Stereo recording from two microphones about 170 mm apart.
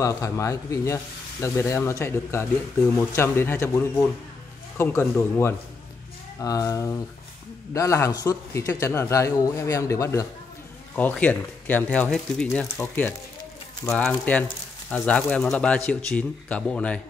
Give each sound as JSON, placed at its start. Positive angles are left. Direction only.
{"t": 0.0, "sound": "a man's voice", "side_deg": 20}